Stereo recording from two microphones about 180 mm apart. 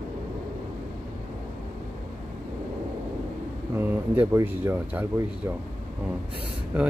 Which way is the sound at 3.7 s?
10° right (ahead or behind).